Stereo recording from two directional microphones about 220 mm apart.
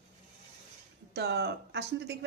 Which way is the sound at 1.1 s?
50° right (ahead or behind).